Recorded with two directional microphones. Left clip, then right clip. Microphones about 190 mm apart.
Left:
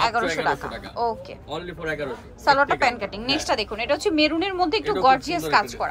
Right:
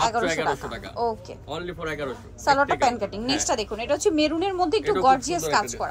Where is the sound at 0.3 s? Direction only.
10° right (ahead or behind).